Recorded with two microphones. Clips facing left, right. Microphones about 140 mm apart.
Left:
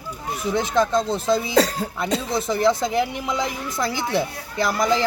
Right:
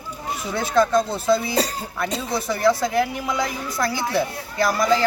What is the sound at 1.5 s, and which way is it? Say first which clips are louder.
Speech: left 4 dB; 90° left.